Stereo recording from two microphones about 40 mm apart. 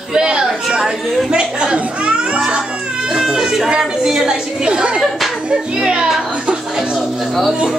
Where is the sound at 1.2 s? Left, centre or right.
Right.